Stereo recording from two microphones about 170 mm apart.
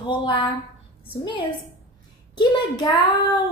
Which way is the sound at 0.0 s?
30° left (ahead or behind).